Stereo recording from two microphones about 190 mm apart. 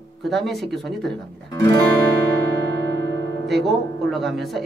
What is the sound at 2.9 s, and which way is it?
Music, 70° right (ahead or behind).